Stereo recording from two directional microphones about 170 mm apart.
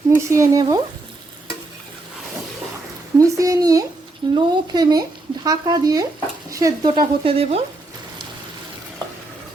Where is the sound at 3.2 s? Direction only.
20° right (ahead or behind); by 7.6 s 35° right (ahead or behind).